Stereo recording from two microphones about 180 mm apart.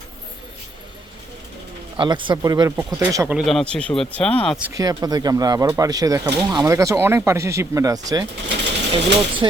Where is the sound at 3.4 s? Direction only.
Centre (ahead or behind).